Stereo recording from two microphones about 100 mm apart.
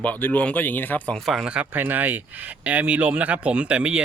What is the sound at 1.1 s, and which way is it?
Speech, centre (ahead or behind).